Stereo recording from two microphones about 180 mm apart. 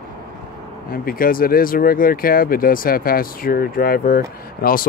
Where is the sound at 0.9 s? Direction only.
55° left (ahead or behind).